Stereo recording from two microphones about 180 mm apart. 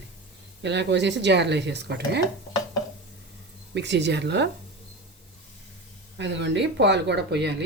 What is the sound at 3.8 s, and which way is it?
Speech, 75° right (ahead or behind).